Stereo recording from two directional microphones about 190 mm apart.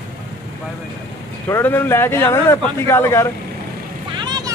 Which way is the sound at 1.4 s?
15° left (ahead or behind).